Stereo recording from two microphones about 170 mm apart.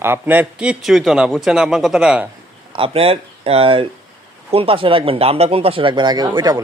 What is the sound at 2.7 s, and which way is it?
Speech, 30° right (ahead or behind).